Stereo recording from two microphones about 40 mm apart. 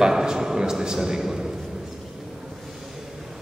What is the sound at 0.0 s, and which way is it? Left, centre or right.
A man's voice, centre.